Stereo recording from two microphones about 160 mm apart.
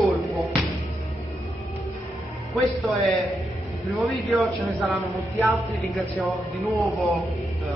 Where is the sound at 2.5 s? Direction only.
Centre (ahead or behind).